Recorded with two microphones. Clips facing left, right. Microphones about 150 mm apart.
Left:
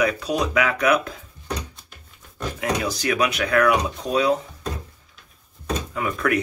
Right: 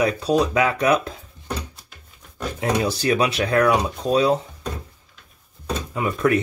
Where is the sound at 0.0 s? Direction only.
30° right (ahead or behind).